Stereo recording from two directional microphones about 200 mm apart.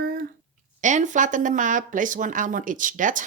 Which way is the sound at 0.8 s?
40° right (ahead or behind).